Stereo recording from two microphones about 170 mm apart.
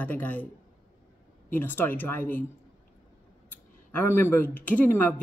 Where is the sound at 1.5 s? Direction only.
10° left (ahead or behind).